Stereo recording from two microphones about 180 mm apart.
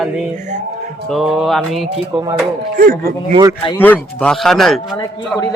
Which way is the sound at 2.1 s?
20° right (ahead or behind).